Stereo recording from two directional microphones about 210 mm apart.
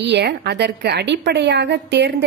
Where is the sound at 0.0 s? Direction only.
55° right (ahead or behind).